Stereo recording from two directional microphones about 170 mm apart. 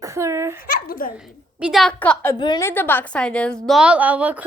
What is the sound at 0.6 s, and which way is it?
Speech, 55° left (ahead or behind).